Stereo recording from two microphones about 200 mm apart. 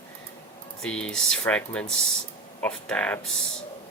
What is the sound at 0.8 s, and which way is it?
Speech, 5° left (ahead or behind).